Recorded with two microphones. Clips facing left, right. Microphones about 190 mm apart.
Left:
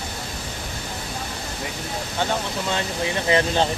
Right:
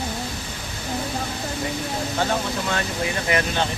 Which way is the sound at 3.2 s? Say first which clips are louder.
Left 4 dB; 25° left (ahead or behind).